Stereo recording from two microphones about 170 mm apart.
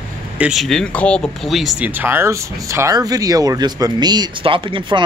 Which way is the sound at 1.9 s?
10° right (ahead or behind).